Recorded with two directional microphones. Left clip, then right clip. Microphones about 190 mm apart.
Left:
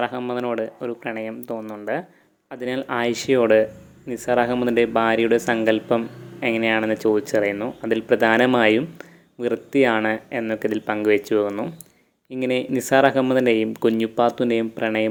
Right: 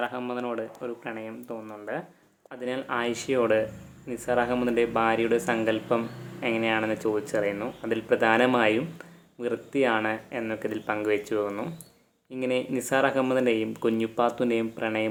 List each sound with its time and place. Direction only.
0.0 s speech: 30° left (ahead or behind)